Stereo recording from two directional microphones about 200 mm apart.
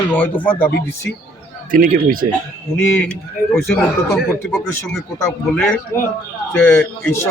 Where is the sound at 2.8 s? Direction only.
10° left (ahead or behind).